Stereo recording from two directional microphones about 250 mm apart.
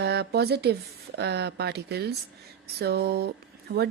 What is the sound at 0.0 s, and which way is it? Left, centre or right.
Speech, right.